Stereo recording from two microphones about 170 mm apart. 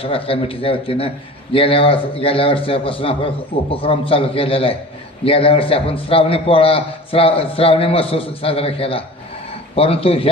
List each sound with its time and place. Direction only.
0.0 s a man's voice: 35° left (ahead or behind)